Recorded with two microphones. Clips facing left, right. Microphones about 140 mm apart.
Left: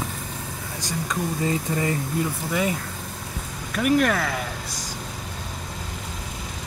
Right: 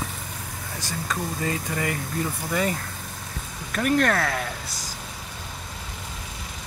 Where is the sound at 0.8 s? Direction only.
20° left (ahead or behind).